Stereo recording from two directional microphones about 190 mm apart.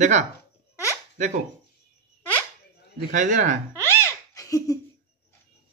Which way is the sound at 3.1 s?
40° right (ahead or behind).